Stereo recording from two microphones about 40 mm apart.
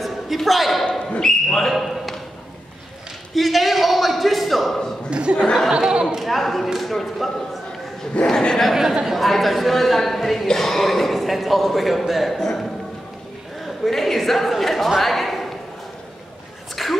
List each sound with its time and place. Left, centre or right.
0.0 s speech: centre
1.2 s speech: centre
1.7 s speech: centre
3.3 s speech: centre
5.1 s speech: right
5.4 s speech: centre
5.7 s chatter: centre
6.0 s speech: centre
8.3 s speech: centre
8.7 s speech: centre
9.2 s speech: centre
13.8 s a woman's voice: centre
15.0 s a sound: centre
16.8 s a sound: centre